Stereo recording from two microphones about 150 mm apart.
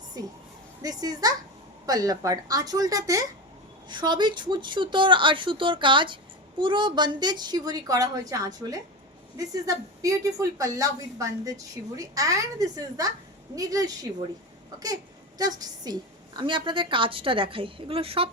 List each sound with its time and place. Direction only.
0.1 s a woman's voice: 25° right (ahead or behind)
15.4 s a woman's voice: 25° right (ahead or behind)